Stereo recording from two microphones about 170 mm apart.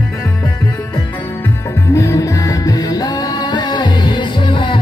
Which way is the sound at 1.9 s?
20° left (ahead or behind).